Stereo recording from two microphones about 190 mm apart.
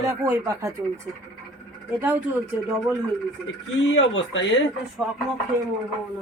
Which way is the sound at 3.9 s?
80° left.